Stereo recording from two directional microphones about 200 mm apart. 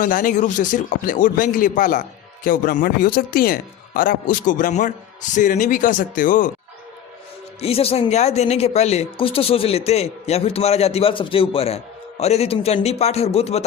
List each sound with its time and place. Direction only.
0.0 s speech: 40° left (ahead or behind)
7.6 s speech: 30° left (ahead or behind)